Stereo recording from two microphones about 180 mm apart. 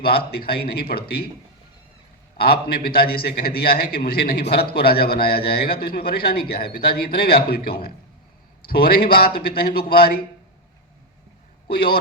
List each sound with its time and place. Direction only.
0.0 s a man's voice: 60° left (ahead or behind)
2.4 s a man's voice: 55° left (ahead or behind)
11.7 s a man's voice: 55° left (ahead or behind)